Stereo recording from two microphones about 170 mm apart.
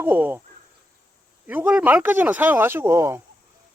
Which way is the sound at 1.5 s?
10° right (ahead or behind).